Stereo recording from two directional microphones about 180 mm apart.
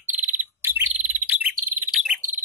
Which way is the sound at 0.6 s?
10° right (ahead or behind).